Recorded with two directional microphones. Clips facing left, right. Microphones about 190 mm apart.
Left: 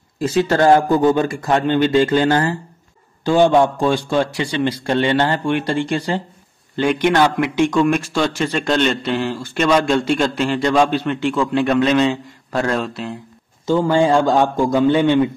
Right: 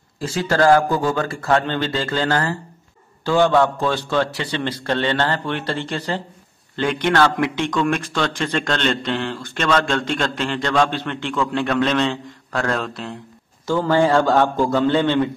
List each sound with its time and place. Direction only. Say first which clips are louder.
0.2 s a man's voice: left 3 dB; 20° left (ahead or behind); by 13.2 s 5° left (ahead or behind)
13.7 s a man's voice: left 2 dB; 15° left (ahead or behind)